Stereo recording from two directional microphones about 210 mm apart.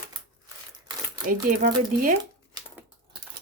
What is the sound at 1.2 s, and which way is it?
Speech, 40° right (ahead or behind).